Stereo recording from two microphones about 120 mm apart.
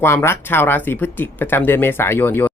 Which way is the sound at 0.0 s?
20° left (ahead or behind).